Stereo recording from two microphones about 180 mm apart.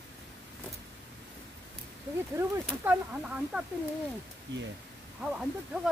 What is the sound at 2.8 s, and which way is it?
Speech, 5° right (ahead or behind).